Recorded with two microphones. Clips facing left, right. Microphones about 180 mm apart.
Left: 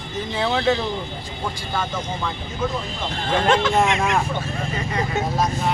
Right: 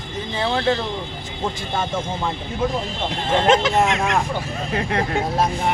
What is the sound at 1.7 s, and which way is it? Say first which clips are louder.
Speech: even; 25° right (ahead or behind).